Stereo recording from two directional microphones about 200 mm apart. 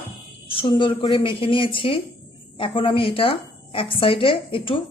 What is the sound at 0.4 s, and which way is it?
A woman's voice, 25° left (ahead or behind).